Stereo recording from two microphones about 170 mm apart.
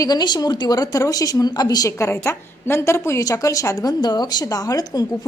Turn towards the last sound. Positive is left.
turn(degrees=20)  # may be behind; listen again after turning